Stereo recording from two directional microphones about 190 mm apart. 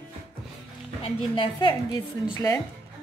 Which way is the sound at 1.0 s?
25° left (ahead or behind).